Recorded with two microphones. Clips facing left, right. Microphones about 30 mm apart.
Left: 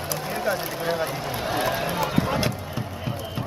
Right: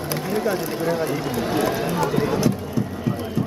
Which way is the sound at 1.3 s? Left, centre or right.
Left.